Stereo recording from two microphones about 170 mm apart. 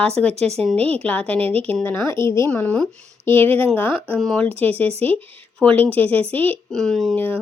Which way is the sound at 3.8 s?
10° left (ahead or behind).